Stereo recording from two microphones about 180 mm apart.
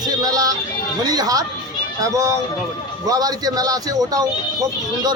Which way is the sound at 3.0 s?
20° right (ahead or behind).